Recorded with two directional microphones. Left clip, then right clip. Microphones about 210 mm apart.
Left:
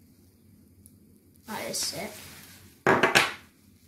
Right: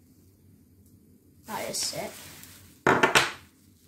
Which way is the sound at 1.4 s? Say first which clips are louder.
Right 1 dB; centre (ahead or behind).